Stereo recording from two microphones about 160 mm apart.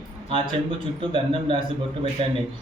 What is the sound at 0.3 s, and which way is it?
Speech, 35° right (ahead or behind).